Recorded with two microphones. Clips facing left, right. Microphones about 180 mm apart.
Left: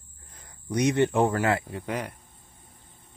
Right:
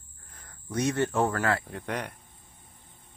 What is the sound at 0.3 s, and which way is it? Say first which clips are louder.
Speech: left 5 dB; 15° left (ahead or behind).